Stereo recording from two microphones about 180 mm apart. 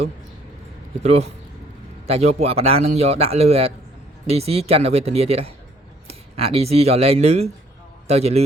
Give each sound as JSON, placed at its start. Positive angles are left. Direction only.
{"t": 1.0, "sound": "a man's voice", "side_deg": -35}